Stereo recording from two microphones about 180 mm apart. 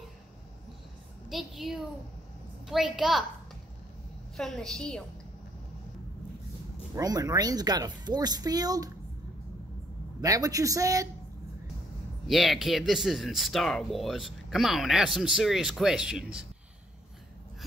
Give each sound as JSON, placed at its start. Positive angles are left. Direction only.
{"t": 1.3, "sound": "speech", "side_deg": 0}
{"t": 4.4, "sound": "speech", "side_deg": 0}
{"t": 7.0, "sound": "speech", "side_deg": -20}
{"t": 10.2, "sound": "speech", "side_deg": -20}
{"t": 12.3, "sound": "speech", "side_deg": 0}